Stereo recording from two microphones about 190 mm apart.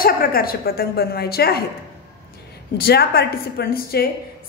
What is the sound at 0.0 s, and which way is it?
A woman's voice, 50° left (ahead or behind).